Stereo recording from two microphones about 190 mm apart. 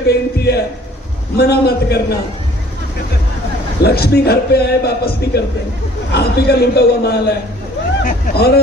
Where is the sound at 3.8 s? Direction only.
55° left (ahead or behind).